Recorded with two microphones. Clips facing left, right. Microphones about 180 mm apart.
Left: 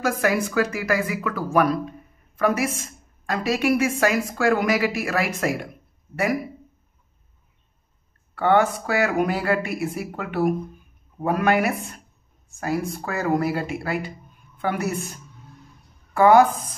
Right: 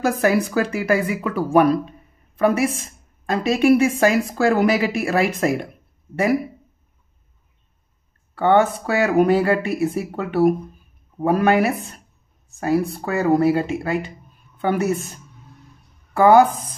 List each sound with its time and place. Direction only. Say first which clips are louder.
0.0 s speech: right 4 dB; 30° right (ahead or behind)
8.4 s speech: right 3 dB; 30° right (ahead or behind)
13.5 s speech: right 6 dB; 20° right (ahead or behind)
16.1 s speech: right 2 dB; 30° right (ahead or behind)